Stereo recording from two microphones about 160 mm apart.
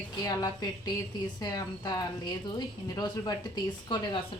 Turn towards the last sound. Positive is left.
turn(degrees=30)  # may be behind; listen again after turning